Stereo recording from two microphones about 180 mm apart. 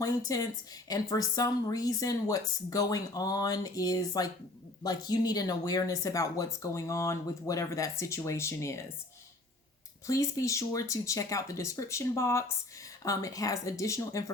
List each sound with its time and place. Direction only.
0.0 s a woman's voice: 20° left (ahead or behind)
10.1 s speech: 15° left (ahead or behind)